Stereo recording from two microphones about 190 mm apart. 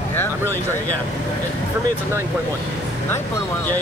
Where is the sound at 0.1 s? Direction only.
10° left (ahead or behind).